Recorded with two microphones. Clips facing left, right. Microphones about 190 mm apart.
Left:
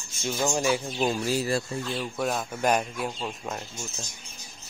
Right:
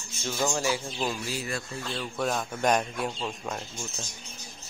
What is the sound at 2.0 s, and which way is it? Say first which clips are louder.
Speech: right 1 dB; 5° left (ahead or behind).